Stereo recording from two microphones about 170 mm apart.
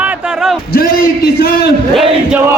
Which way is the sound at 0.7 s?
65° left (ahead or behind).